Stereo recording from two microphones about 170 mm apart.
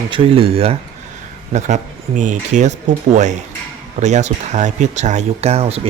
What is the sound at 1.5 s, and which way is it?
Speech, 45° right (ahead or behind).